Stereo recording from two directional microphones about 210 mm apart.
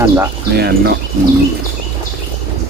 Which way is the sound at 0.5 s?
50° right (ahead or behind).